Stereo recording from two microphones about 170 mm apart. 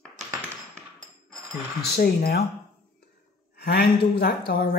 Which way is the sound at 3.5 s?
70° left (ahead or behind).